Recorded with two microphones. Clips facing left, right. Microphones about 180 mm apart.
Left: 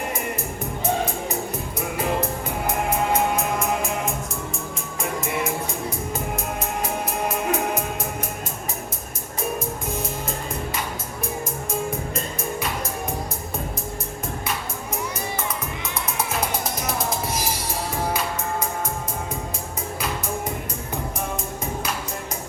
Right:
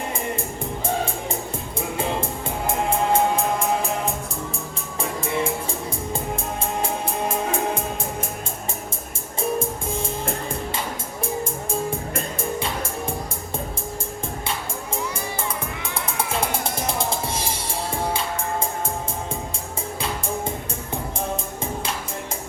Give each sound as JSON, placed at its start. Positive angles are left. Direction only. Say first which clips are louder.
{"t": 2.6, "sound": "music", "louder": "right 2 dB", "side_deg": -30}
{"t": 6.8, "sound": "music", "louder": "even", "side_deg": -30}
{"t": 9.4, "sound": "music", "louder": "right 3 dB", "side_deg": -30}
{"t": 12.4, "sound": "music", "louder": "right 2 dB", "side_deg": -30}
{"t": 16.1, "sound": "music", "louder": "right 2 dB", "side_deg": -30}